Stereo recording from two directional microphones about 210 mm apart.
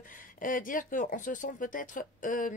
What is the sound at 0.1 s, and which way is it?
Speech, 40° left (ahead or behind).